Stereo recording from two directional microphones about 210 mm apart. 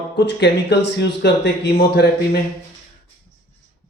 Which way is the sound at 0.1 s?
55° left (ahead or behind).